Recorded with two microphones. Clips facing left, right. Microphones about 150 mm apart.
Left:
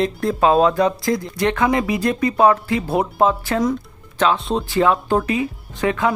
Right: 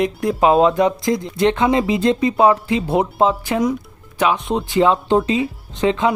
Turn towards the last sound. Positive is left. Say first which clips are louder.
# right 2 dB
turn(degrees=-20)  # may be behind; listen again after turning